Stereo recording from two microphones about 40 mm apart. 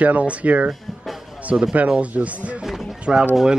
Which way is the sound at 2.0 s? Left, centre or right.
Right.